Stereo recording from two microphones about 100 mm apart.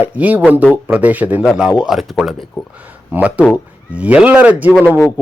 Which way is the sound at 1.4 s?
5° right (ahead or behind).